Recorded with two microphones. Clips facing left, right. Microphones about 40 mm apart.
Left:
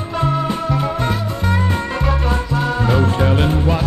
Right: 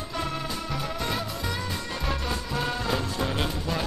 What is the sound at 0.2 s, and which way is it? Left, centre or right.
Music, left.